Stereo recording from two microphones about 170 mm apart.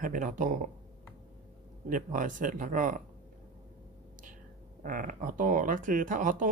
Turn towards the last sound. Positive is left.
turn(degrees=-50)  # may be behind; listen again after turning